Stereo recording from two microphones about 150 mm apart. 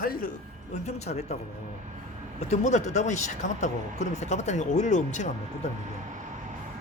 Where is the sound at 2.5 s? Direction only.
50° left (ahead or behind).